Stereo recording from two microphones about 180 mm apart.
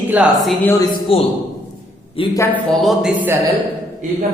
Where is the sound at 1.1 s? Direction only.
30° left (ahead or behind).